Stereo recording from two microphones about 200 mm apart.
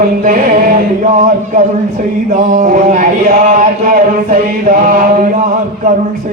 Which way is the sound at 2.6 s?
40° right (ahead or behind).